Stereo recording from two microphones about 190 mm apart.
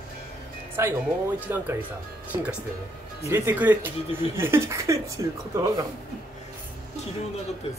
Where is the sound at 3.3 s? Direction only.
10° right (ahead or behind).